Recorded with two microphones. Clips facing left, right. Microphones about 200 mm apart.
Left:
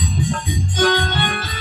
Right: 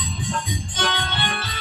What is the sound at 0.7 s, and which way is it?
Music, 45° left (ahead or behind).